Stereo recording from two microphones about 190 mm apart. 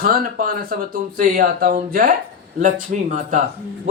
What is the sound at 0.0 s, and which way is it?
Speech, 50° right (ahead or behind).